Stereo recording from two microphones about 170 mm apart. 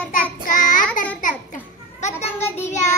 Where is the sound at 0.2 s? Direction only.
50° left (ahead or behind).